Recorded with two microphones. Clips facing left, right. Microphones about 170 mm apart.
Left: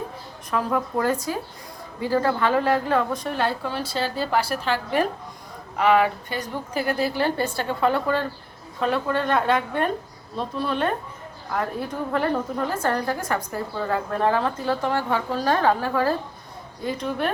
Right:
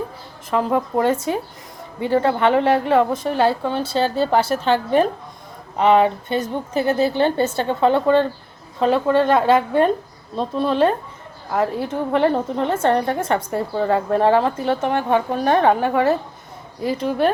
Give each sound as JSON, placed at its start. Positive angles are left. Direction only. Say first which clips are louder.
{"t": 0.5, "sound": "a woman's voice", "louder": "right 5 dB", "side_deg": -25}
{"t": 17.0, "sound": "speech", "louder": "right 8 dB", "side_deg": -35}